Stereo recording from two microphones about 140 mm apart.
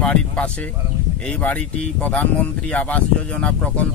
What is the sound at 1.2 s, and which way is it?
Speech, 10° left (ahead or behind).